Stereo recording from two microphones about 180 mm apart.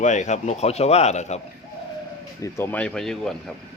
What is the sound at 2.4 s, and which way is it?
Speech, 15° left (ahead or behind).